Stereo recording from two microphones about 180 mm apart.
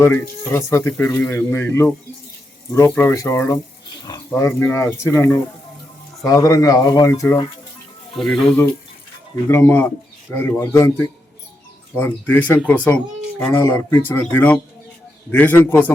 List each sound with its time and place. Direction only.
0.0 s speech: 15° left (ahead or behind)
8.1 s speech: centre (ahead or behind)
11.9 s speech: 10° left (ahead or behind)